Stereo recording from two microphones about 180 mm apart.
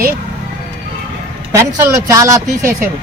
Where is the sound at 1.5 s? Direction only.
15° right (ahead or behind).